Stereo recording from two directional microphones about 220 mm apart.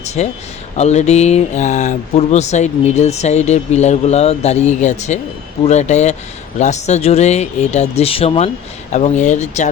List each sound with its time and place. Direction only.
0.0 s a man's voice: 30° left (ahead or behind)